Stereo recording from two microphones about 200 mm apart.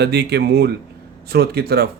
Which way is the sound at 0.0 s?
55° right (ahead or behind).